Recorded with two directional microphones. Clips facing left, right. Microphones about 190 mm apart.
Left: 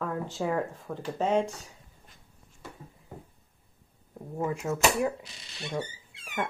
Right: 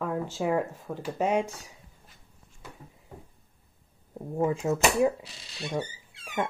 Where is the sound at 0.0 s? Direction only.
15° right (ahead or behind).